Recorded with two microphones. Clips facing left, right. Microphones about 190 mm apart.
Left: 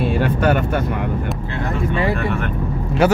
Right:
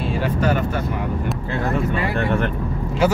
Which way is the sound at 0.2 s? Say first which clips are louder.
Left 1 dB; 65° left (ahead or behind).